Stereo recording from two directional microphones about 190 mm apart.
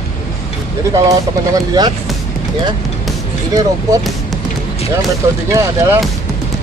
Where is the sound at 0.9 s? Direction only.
20° right (ahead or behind).